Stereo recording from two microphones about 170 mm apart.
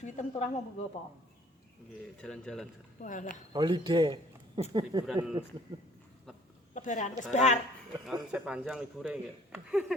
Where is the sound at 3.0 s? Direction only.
50° left (ahead or behind).